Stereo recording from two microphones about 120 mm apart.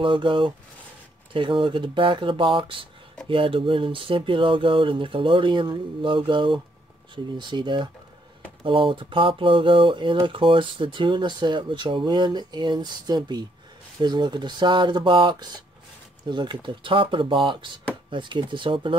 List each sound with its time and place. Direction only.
0.0 s speech: 45° right (ahead or behind)